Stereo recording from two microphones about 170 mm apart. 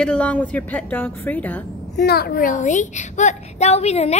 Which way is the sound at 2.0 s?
70° left (ahead or behind).